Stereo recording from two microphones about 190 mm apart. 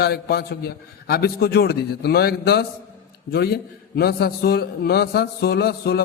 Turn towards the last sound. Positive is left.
turn(degrees=55)  # may be behind; listen again after turning